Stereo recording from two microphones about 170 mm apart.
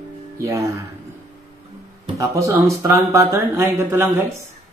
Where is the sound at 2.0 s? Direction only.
20° right (ahead or behind).